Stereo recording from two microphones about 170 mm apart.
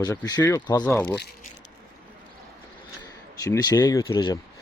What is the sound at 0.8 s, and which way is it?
Speech, 10° left (ahead or behind).